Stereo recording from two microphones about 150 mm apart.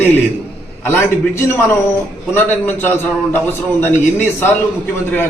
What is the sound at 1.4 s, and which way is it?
A man's voice, 15° left (ahead or behind).